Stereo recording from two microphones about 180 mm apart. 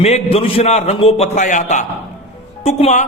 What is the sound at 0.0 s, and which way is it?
A man's voice, 35° left (ahead or behind).